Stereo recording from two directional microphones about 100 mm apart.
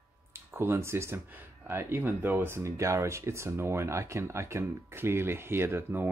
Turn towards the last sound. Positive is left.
turn(degrees=-20)  # may be behind; listen again after turning